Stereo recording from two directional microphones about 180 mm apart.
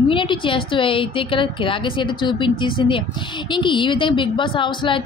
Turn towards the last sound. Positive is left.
turn(degrees=25)  # may be behind; listen again after turning